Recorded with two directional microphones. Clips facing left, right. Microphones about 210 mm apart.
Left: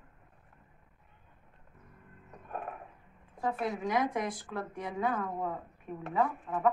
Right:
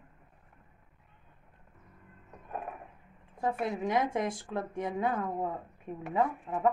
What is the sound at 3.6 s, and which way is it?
A woman's voice, 25° right (ahead or behind).